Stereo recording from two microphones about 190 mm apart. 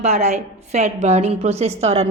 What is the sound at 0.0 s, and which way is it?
A woman's voice, 35° right (ahead or behind).